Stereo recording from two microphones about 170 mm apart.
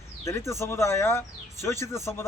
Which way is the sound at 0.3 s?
15° left (ahead or behind).